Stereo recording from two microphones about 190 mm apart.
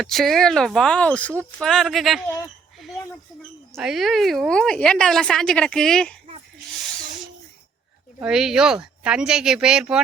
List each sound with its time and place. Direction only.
0.0 s a woman's voice: centre (ahead or behind)
3.8 s a woman's voice: centre (ahead or behind)
8.2 s a woman's voice: 5° right (ahead or behind)